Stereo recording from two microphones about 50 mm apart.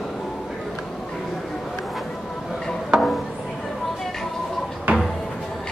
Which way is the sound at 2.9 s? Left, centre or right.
Centre.